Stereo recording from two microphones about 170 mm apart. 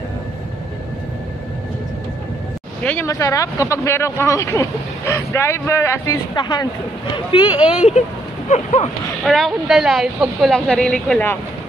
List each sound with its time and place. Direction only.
2.8 s speech: 10° left (ahead or behind); by 7.6 s 30° left (ahead or behind)
8.5 s speech: 40° left (ahead or behind)
9.2 s speech: centre (ahead or behind)